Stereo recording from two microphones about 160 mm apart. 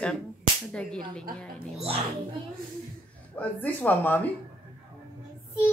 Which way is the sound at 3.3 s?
10° left (ahead or behind).